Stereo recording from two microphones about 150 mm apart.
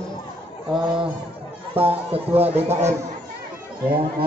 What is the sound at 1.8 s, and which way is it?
Speech, 40° right (ahead or behind).